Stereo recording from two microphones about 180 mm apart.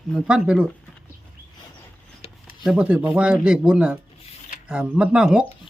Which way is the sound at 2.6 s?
5° right (ahead or behind).